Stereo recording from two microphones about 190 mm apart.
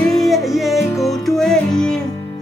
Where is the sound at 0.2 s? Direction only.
Centre (ahead or behind).